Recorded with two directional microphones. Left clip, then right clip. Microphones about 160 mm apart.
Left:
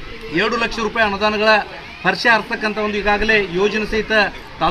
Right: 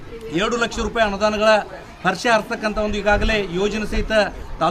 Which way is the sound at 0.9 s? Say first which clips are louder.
Left 1 dB; 35° right (ahead or behind).